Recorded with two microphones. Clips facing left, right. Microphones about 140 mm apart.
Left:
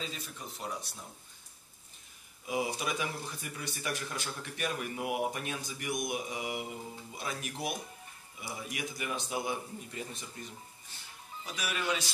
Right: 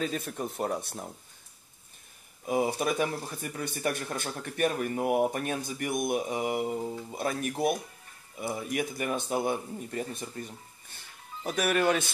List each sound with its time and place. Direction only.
0.0 s speech: 55° right (ahead or behind)
2.4 s speech: 50° right (ahead or behind)
11.4 s speech: 55° right (ahead or behind)